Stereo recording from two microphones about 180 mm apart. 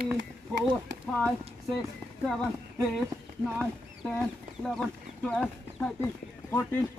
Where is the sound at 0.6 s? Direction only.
5° left (ahead or behind).